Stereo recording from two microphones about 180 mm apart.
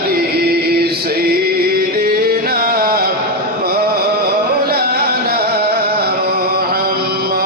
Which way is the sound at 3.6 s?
55° right (ahead or behind).